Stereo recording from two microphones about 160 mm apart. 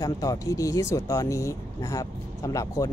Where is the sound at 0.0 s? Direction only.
20° left (ahead or behind).